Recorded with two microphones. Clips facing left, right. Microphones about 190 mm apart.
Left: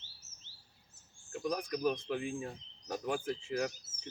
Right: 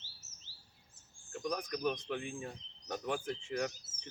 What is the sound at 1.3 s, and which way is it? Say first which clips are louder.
Speech: left 2 dB; 5° left (ahead or behind).